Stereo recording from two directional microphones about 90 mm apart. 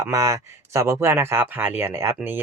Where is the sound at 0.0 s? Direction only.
40° right (ahead or behind).